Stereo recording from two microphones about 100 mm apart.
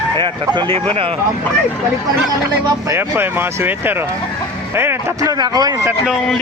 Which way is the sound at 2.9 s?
20° right (ahead or behind).